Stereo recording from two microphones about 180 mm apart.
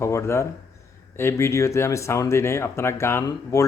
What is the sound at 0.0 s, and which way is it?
Speech, 15° left (ahead or behind).